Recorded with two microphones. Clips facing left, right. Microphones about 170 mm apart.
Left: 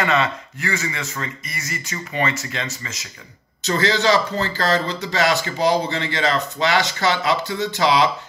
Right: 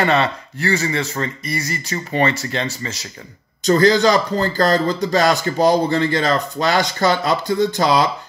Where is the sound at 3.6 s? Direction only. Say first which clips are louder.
Right 6 dB; 45° right (ahead or behind).